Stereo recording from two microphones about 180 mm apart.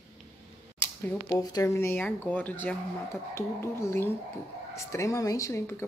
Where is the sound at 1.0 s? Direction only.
10° left (ahead or behind).